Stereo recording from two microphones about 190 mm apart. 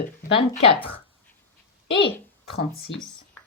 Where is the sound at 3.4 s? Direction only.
10° left (ahead or behind).